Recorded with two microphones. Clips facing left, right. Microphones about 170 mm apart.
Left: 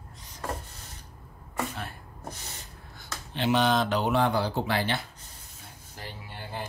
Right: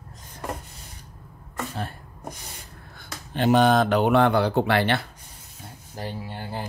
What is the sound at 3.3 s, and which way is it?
Speech, 50° right (ahead or behind).